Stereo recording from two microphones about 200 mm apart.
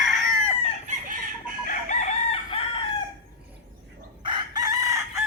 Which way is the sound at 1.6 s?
35° left (ahead or behind).